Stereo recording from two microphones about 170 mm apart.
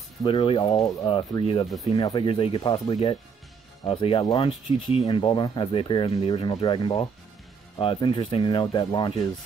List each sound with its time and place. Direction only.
0.2 s speech: 30° left (ahead or behind)